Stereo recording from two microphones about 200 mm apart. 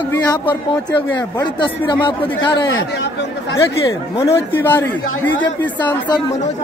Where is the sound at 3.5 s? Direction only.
15° left (ahead or behind).